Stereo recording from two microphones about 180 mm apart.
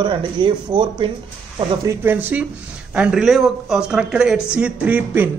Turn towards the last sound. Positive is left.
turn(degrees=-10)  # may be behind; listen again after turning